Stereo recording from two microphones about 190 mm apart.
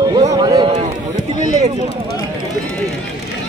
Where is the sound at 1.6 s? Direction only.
35° right (ahead or behind).